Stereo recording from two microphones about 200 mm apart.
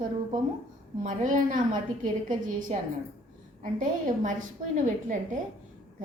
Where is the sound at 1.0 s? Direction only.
40° right (ahead or behind).